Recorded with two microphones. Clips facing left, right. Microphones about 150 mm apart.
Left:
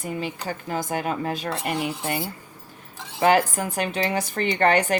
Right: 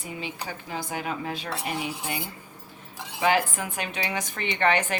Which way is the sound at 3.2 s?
40° left (ahead or behind).